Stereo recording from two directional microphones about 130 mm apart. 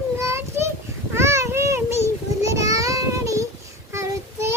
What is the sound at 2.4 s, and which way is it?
Child singing, 25° right (ahead or behind).